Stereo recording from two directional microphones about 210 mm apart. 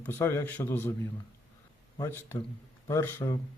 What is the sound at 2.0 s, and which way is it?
Speech, 10° left (ahead or behind).